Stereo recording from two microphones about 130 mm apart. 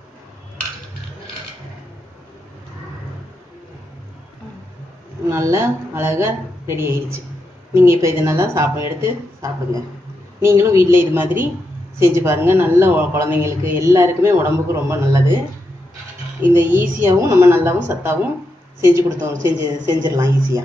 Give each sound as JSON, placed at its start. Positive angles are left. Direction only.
{"t": 5.2, "sound": "a man's voice", "side_deg": -25}
{"t": 16.3, "sound": "a man's voice", "side_deg": -15}